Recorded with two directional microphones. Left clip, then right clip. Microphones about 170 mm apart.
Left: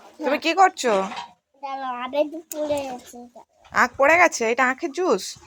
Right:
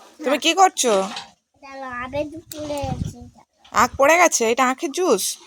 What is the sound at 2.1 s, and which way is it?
Speech, 20° right (ahead or behind).